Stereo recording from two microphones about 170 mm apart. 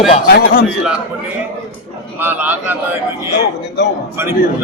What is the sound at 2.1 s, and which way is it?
Speech, 10° right (ahead or behind).